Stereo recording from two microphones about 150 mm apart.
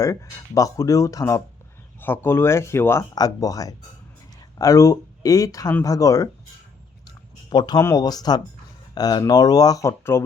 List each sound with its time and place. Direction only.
0.0 s speech: 20° left (ahead or behind)
7.5 s speech: 30° left (ahead or behind)